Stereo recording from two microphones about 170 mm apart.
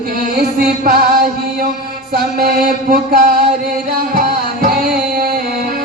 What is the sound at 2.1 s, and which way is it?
Music, 65° right (ahead or behind).